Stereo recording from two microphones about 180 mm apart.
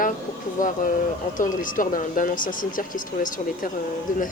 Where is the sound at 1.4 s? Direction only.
50° left (ahead or behind).